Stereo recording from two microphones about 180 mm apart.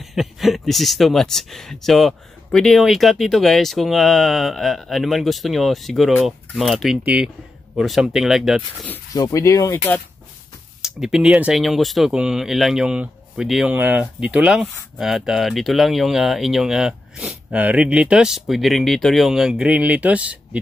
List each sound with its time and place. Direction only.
0.0 s speech: centre (ahead or behind)
8.9 s speech: 20° left (ahead or behind)
10.8 s speech: centre (ahead or behind)